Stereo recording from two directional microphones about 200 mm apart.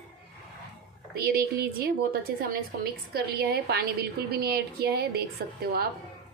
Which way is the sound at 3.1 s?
50° right (ahead or behind).